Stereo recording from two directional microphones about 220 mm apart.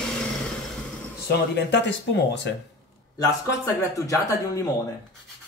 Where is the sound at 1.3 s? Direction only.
50° left (ahead or behind).